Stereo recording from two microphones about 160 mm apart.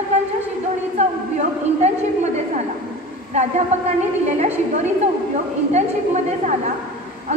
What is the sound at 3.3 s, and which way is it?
A woman's voice, 45° right (ahead or behind).